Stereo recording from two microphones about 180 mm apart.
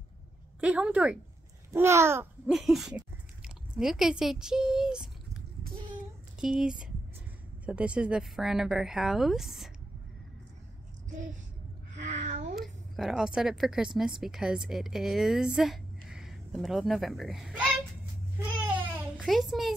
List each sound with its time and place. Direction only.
0.6 s a woman's voice: 5° right (ahead or behind)
2.5 s speech: centre (ahead or behind)
6.4 s speech: 5° right (ahead or behind)
12.1 s a sound: 40° right (ahead or behind)
12.5 s a woman's voice: centre (ahead or behind)
19.1 s a woman's voice: centre (ahead or behind)